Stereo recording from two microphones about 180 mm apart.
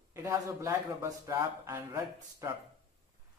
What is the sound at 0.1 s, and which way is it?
Speech, 15° right (ahead or behind).